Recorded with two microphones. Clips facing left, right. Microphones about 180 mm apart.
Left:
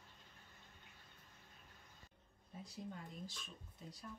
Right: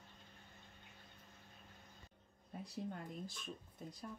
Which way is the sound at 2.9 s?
55° right (ahead or behind).